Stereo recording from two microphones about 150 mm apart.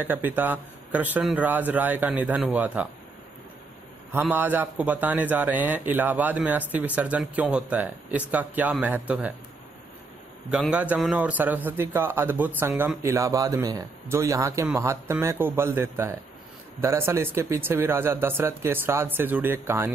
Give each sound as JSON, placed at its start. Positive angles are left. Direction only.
{"t": 0.0, "sound": "a man's voice", "side_deg": -10}
{"t": 4.1, "sound": "a man's voice", "side_deg": -15}
{"t": 10.5, "sound": "a man's voice", "side_deg": -5}